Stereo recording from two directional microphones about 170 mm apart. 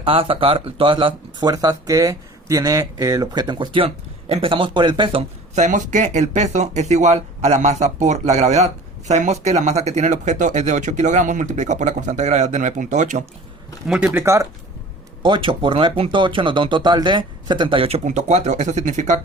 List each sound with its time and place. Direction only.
0.0 s speech: 30° right (ahead or behind)
5.5 s speech: 45° right (ahead or behind)
13.8 s speech: 5° right (ahead or behind)
15.2 s speech: 30° right (ahead or behind)